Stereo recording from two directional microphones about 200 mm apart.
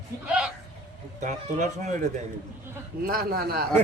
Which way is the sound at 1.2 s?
35° right (ahead or behind).